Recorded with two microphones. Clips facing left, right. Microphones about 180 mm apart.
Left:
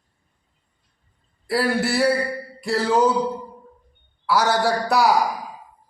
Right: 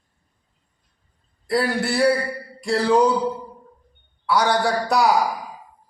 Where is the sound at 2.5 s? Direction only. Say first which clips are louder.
Right 2 dB; centre (ahead or behind).